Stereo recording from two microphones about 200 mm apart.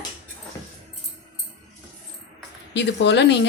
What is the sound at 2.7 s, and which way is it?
Speech, 60° left (ahead or behind).